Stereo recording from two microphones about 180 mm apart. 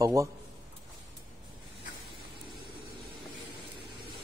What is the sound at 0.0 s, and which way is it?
Speech, 20° right (ahead or behind).